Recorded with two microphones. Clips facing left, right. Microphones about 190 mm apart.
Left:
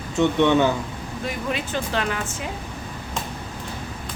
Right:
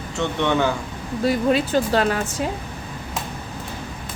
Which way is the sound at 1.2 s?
35° right (ahead or behind).